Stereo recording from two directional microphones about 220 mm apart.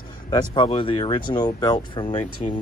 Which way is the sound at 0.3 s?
20° left (ahead or behind).